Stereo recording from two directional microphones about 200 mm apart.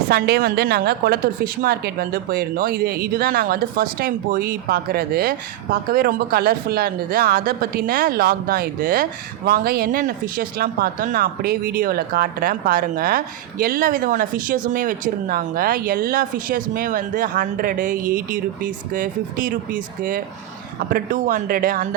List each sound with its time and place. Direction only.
0.1 s speech: 50° right (ahead or behind)